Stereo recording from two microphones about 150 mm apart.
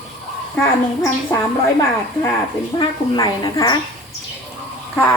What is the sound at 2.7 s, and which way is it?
A woman's voice, 30° left (ahead or behind).